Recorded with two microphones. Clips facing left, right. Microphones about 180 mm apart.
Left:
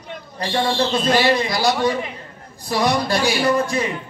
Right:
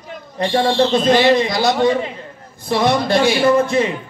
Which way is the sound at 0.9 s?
20° right (ahead or behind).